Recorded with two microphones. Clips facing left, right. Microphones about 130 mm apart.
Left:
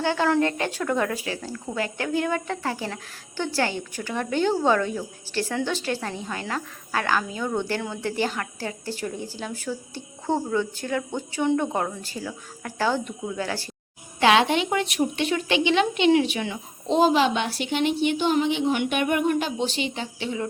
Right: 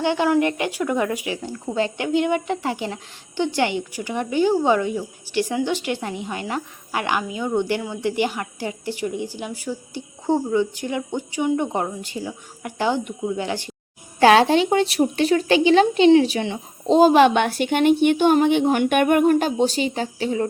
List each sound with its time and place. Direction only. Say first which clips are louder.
0.0 s speech: right 3 dB; 15° right (ahead or behind)
14.2 s speech: right 5 dB; 40° right (ahead or behind)
17.2 s a woman's voice: right 7 dB; 60° right (ahead or behind); by 20.5 s 40° right (ahead or behind)